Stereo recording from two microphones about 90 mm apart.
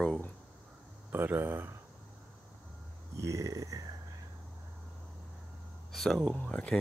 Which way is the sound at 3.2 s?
35° right (ahead or behind).